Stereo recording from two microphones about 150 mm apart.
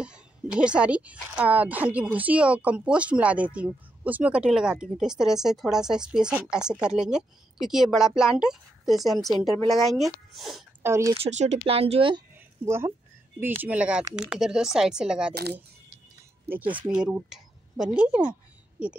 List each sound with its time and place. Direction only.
0.0 s speech: 5° right (ahead or behind)
10.8 s speech: 20° right (ahead or behind)
11.1 s speech: 50° right (ahead or behind)
12.6 s speech: 15° right (ahead or behind)
16.8 s speech: 10° right (ahead or behind)